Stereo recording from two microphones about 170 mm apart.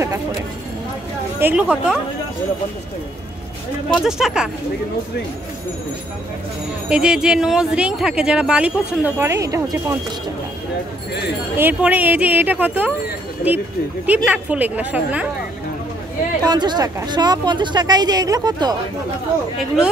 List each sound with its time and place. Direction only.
1.4 s speech: 5° right (ahead or behind)
3.9 s speech: centre (ahead or behind)
6.9 s speech: 5° right (ahead or behind)
11.5 s speech: 10° right (ahead or behind)
14.0 s speech: 10° right (ahead or behind)
16.4 s speech: 25° right (ahead or behind)